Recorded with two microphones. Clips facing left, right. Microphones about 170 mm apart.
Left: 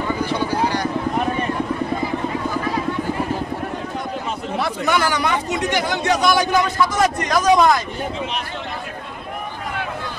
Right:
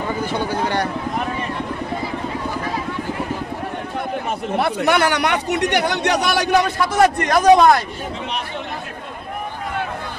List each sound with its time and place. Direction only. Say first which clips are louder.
0.3 s vehicle: left 1 dB; 55° right (ahead or behind)
4.6 s speech: right 3 dB; 60° right (ahead or behind)